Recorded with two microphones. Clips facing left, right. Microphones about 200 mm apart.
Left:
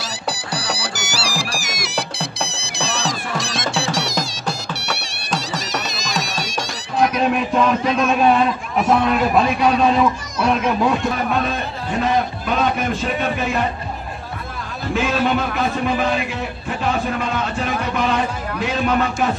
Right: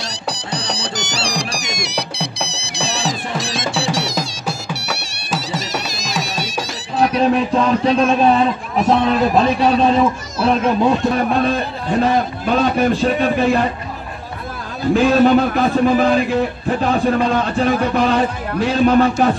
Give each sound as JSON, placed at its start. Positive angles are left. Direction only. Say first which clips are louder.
{"t": 0.0, "sound": "music", "louder": "right 1 dB", "side_deg": 5}
{"t": 7.0, "sound": "a man's voice", "louder": "right 3 dB", "side_deg": -30}
{"t": 12.0, "sound": "a man's voice", "louder": "right 2 dB", "side_deg": -35}
{"t": 15.0, "sound": "a man's voice", "louder": "right 7 dB", "side_deg": -40}